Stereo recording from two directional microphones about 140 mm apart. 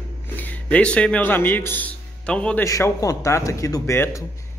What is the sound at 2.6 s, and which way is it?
A man's voice, 20° left (ahead or behind).